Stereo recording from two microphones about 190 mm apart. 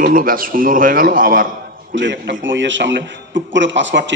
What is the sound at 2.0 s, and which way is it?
A man's voice, 70° right (ahead or behind).